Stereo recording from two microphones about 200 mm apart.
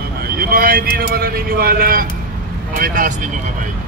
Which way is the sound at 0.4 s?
45° right (ahead or behind).